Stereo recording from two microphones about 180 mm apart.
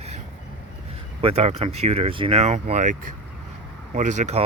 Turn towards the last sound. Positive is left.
turn(degrees=-40)  # may be behind; listen again after turning